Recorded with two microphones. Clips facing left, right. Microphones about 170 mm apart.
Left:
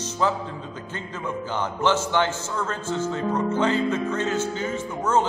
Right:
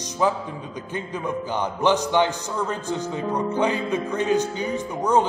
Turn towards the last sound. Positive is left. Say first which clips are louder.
# right 2 dB
turn(degrees=-15)  # may be behind; listen again after turning